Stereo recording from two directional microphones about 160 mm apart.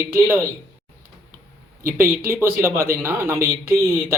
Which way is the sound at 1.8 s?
15° right (ahead or behind).